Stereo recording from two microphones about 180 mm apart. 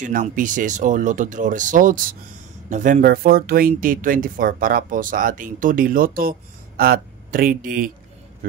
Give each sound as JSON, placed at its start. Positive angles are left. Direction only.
{"t": 0.0, "sound": "speech", "side_deg": -45}